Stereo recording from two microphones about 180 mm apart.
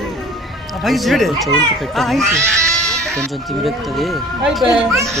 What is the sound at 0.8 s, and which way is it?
Speech, centre (ahead or behind).